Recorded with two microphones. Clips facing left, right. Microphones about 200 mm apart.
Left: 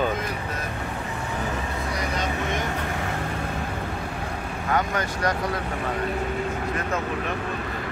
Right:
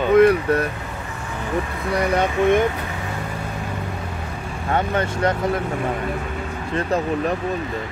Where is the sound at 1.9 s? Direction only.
60° right (ahead or behind).